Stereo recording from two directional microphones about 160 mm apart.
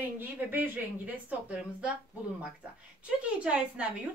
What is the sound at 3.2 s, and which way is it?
Speech, 5° right (ahead or behind).